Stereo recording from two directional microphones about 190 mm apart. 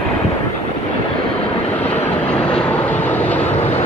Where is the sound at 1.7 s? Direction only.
10° left (ahead or behind).